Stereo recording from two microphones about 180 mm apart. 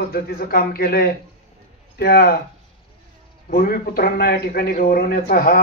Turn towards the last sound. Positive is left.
turn(degrees=55)  # may be behind; listen again after turning